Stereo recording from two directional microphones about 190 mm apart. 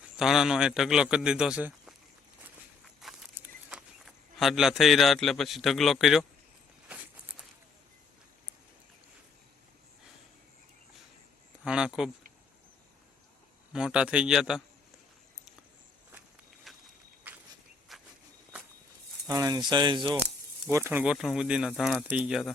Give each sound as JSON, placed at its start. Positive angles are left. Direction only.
{"t": 0.2, "sound": "a man's voice", "side_deg": 0}
{"t": 2.8, "sound": "a sound", "side_deg": 0}
{"t": 6.8, "sound": "walk", "side_deg": -5}
{"t": 11.6, "sound": "a sound", "side_deg": -5}
{"t": 13.7, "sound": "a man's voice", "side_deg": -5}
{"t": 16.7, "sound": "walk", "side_deg": 0}
{"t": 17.3, "sound": "a sound", "side_deg": -10}
{"t": 17.9, "sound": "walk", "side_deg": 0}
{"t": 19.3, "sound": "speech", "side_deg": -20}
{"t": 20.1, "sound": "speech", "side_deg": -35}
{"t": 20.7, "sound": "a man's voice", "side_deg": -15}